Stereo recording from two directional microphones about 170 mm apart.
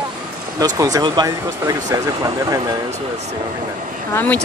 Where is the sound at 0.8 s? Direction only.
20° right (ahead or behind).